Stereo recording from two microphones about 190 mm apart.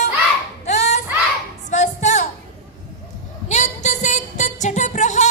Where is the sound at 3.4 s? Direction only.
40° left (ahead or behind).